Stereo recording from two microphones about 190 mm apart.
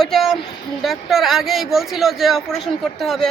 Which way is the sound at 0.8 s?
Centre (ahead or behind).